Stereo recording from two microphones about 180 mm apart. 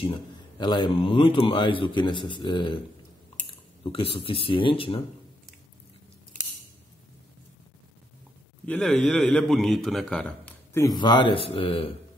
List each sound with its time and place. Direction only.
0.0 s a man's voice: 25° left (ahead or behind)
8.6 s a man's voice: 5° left (ahead or behind); by 11.9 s 30° left (ahead or behind)